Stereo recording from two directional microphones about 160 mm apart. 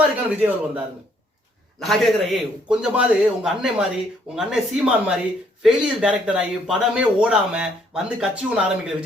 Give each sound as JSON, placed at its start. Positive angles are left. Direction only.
{"t": 0.3, "sound": "a man's voice", "side_deg": -10}
{"t": 1.8, "sound": "speech", "side_deg": 0}